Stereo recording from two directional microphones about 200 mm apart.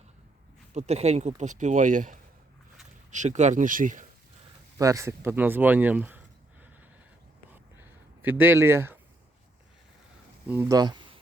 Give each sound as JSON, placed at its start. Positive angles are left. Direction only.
{"t": 0.7, "sound": "speech", "side_deg": -35}
{"t": 4.8, "sound": "speech", "side_deg": -15}
{"t": 7.5, "sound": "a sound", "side_deg": -10}
{"t": 10.5, "sound": "speech", "side_deg": -15}